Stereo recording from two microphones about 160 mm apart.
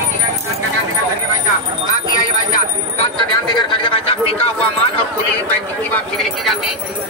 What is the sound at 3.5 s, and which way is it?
Speech, 30° left (ahead or behind).